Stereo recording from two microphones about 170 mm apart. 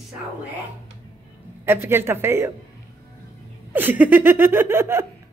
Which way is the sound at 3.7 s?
10° right (ahead or behind).